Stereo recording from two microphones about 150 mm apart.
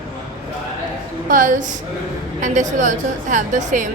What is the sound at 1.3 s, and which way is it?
A woman's voice, 60° right (ahead or behind).